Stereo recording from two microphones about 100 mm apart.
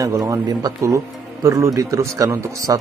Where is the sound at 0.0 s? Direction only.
35° right (ahead or behind).